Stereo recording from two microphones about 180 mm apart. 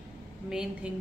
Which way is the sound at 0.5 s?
5° right (ahead or behind).